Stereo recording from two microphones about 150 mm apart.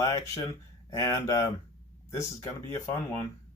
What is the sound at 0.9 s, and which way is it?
Speech, 20° left (ahead or behind).